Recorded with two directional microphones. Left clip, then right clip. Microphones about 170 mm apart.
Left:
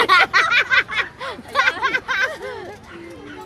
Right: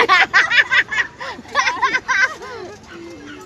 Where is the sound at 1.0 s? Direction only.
10° left (ahead or behind).